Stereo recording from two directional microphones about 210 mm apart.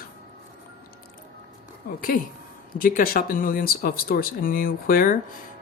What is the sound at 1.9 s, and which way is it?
Speech, 40° left (ahead or behind).